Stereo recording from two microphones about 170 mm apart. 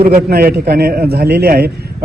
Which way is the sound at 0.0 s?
65° right (ahead or behind).